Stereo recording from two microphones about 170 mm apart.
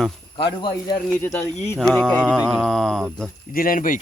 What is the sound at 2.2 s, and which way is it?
Mantra, 10° right (ahead or behind).